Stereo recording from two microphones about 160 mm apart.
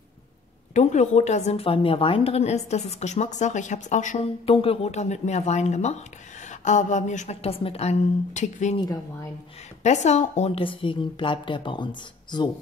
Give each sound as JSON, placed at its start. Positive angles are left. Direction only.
{"t": 0.7, "sound": "a woman's voice", "side_deg": 45}
{"t": 8.7, "sound": "speech", "side_deg": 25}
{"t": 9.8, "sound": "a woman's voice", "side_deg": 45}